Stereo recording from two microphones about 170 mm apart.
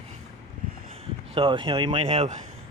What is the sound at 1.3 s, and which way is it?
Speech, 30° right (ahead or behind).